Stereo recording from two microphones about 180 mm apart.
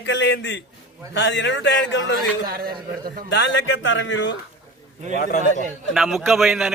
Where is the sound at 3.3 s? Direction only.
85° left.